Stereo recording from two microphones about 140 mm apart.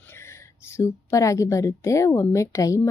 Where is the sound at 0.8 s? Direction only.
20° left (ahead or behind).